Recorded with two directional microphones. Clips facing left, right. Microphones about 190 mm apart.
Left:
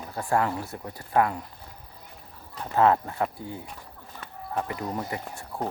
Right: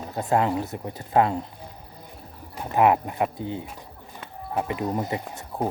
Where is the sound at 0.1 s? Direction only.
20° right (ahead or behind).